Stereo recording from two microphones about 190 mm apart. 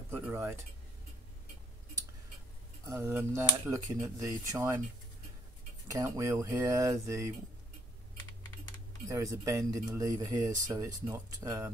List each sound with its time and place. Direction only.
0.1 s speech: 10° right (ahead or behind)
2.9 s speech: 15° right (ahead or behind)
5.9 s speech: 15° right (ahead or behind)
9.0 s speech: 15° right (ahead or behind)